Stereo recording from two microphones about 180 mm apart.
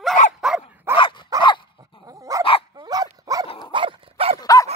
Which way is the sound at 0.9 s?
25° left (ahead or behind).